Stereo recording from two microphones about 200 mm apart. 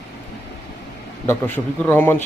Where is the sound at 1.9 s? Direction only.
10° left (ahead or behind).